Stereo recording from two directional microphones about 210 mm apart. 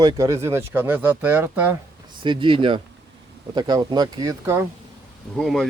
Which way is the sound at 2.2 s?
25° right (ahead or behind).